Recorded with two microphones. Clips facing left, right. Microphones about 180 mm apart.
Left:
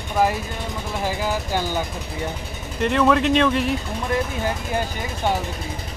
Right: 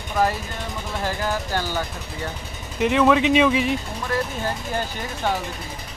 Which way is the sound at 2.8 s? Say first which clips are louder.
Right 1 dB; centre (ahead or behind).